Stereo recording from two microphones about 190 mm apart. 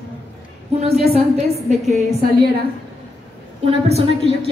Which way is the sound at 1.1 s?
35° right (ahead or behind).